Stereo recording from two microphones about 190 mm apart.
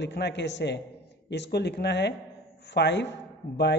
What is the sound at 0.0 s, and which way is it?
A man's voice, 65° left (ahead or behind).